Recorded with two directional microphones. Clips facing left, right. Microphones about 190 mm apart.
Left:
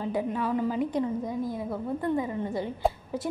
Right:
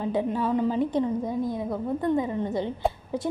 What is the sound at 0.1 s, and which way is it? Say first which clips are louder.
A woman's voice: right 3 dB; 25° right (ahead or behind).